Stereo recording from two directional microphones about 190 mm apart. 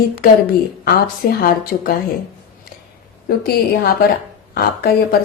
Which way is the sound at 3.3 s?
55° left (ahead or behind).